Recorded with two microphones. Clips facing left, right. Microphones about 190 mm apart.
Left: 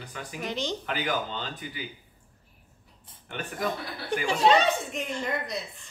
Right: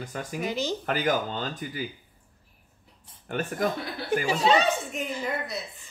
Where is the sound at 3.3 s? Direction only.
45° right (ahead or behind).